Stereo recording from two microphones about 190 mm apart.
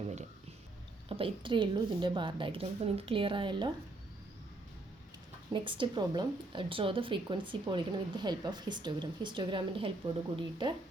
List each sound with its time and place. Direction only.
1.0 s a woman's voice: 30° right (ahead or behind)
5.5 s a woman's voice: 25° right (ahead or behind)